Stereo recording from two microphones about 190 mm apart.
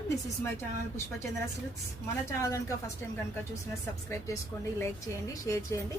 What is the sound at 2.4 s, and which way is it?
Speech, 15° left (ahead or behind).